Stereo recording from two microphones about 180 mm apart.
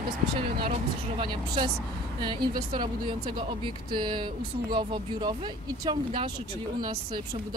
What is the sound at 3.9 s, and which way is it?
Speech, 25° right (ahead or behind).